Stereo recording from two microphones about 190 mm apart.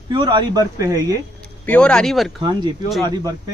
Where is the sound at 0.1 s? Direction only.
25° right (ahead or behind).